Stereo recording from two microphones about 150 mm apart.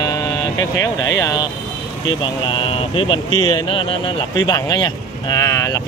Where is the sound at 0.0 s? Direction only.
25° left (ahead or behind).